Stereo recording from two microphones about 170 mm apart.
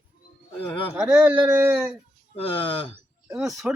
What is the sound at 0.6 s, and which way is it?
Speech, 30° left (ahead or behind).